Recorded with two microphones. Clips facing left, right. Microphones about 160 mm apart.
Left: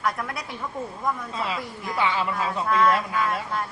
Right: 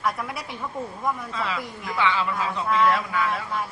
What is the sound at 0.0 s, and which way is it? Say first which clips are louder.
Speech: even; centre (ahead or behind).